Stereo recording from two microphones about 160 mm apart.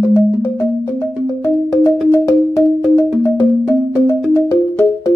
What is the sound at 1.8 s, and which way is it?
Music, 20° left (ahead or behind).